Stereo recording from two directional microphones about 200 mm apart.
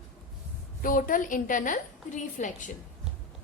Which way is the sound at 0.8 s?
45° left (ahead or behind).